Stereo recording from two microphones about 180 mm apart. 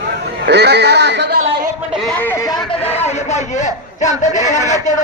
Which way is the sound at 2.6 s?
35° left (ahead or behind).